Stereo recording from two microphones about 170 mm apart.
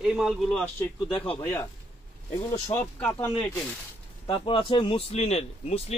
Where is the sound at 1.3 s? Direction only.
15° left (ahead or behind).